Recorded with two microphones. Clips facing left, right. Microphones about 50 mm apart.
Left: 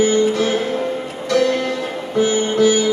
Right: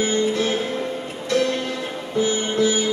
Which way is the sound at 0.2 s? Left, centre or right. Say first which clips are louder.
Left 4 dB; left.